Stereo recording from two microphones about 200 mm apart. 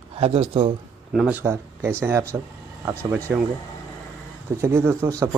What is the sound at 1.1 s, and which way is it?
Speech, 10° right (ahead or behind).